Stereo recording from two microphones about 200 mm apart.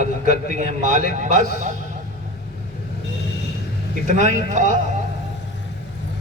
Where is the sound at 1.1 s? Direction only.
40° right (ahead or behind).